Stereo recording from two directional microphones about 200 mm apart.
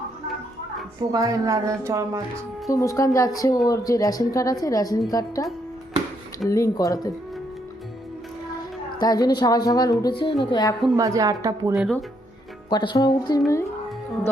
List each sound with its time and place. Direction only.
1.1 s speech: 15° right (ahead or behind)
2.6 s a woman's voice: 15° left (ahead or behind)
6.5 s a woman's voice: 15° left (ahead or behind)
9.0 s a woman's voice: 20° left (ahead or behind)
10.9 s speech: 15° right (ahead or behind)
11.7 s speech: centre (ahead or behind)
12.7 s a woman's voice: 20° left (ahead or behind)